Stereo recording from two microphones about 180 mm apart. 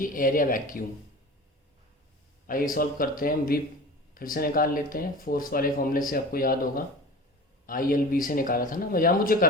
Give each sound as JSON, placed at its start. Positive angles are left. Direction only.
{"t": 0.0, "sound": "speech", "side_deg": 50}
{"t": 2.5, "sound": "speech", "side_deg": 50}